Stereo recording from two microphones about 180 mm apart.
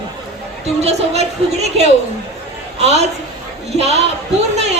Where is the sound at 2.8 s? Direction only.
40° right (ahead or behind).